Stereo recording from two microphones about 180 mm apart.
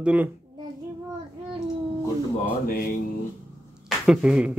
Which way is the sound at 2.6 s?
55° left (ahead or behind).